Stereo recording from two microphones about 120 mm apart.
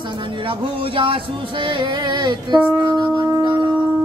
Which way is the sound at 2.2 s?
35° right (ahead or behind).